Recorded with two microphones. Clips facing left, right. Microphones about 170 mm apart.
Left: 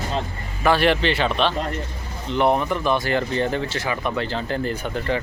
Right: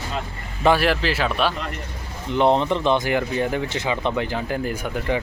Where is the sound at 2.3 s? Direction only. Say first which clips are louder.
Right 1 dB; 20° right (ahead or behind).